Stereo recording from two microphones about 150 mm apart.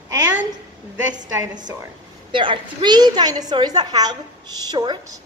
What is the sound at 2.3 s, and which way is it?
A woman's voice, 35° right (ahead or behind).